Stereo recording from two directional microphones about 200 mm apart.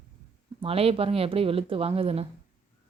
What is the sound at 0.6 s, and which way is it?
A woman's voice, 30° right (ahead or behind).